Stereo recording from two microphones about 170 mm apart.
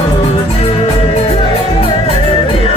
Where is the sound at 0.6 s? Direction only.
35° left (ahead or behind).